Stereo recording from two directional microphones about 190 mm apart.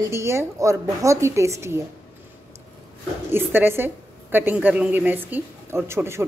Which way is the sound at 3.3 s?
10° right (ahead or behind).